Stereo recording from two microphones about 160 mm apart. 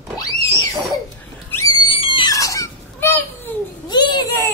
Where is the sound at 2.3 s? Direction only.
20° left (ahead or behind).